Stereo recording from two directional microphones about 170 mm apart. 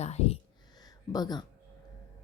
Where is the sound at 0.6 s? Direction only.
25° left (ahead or behind).